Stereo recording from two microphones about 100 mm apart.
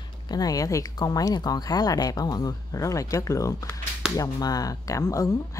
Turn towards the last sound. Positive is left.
turn(degrees=35)  # may be behind; listen again after turning